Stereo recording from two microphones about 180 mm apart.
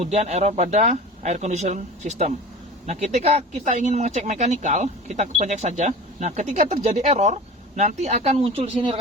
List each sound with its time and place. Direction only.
0.0 s speech: 35° right (ahead or behind)